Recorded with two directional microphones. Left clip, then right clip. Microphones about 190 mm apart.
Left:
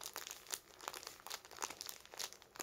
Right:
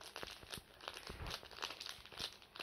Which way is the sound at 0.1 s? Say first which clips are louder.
Left 1 dB; 15° left (ahead or behind).